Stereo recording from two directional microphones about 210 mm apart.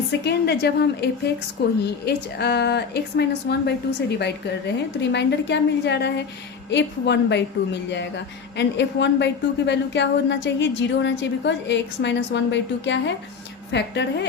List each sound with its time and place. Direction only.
0.3 s a woman's voice: 50° left (ahead or behind)
4.9 s a woman's voice: 55° left (ahead or behind)